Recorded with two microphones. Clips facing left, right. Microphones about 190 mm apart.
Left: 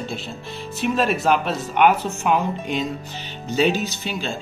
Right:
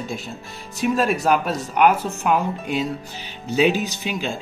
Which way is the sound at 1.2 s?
5° right (ahead or behind).